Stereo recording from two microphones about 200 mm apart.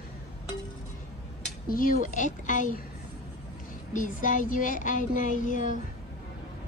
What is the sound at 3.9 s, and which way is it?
Speech, 40° left (ahead or behind).